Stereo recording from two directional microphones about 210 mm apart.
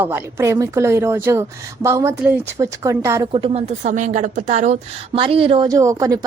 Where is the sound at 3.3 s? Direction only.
25° right (ahead or behind).